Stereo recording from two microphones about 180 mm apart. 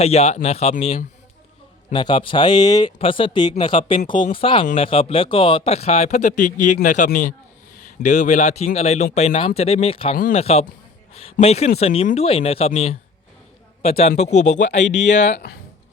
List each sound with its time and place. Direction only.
0.0 s speech: 35° left (ahead or behind)
1.9 s speech: 25° left (ahead or behind)
14.8 s speech: 75° left (ahead or behind)
15.1 s speech: 40° left (ahead or behind)